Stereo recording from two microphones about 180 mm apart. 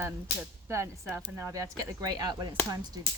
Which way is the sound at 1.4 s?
15° right (ahead or behind).